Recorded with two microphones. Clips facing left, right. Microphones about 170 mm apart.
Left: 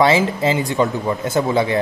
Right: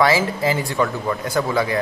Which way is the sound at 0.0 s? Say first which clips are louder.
Left 2 dB; 25° left (ahead or behind).